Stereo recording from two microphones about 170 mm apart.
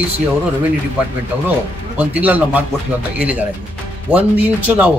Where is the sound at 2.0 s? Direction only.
10° right (ahead or behind).